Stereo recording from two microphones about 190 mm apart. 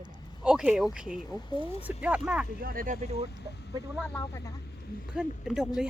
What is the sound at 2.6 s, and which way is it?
Speech, 50° right (ahead or behind).